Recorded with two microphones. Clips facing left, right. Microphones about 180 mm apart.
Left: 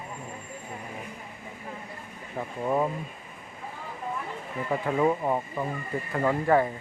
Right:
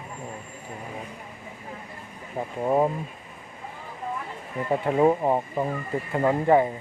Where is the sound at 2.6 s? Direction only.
30° right (ahead or behind).